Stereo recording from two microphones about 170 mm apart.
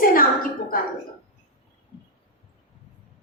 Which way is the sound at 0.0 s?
55° left (ahead or behind).